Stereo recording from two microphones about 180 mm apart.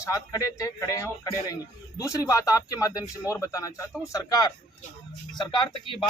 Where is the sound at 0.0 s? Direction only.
15° left (ahead or behind).